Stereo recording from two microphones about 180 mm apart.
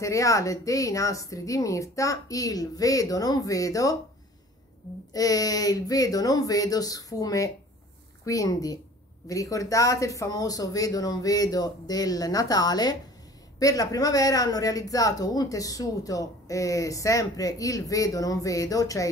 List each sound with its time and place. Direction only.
0.0 s speech: 15° left (ahead or behind)
5.1 s speech: 20° left (ahead or behind)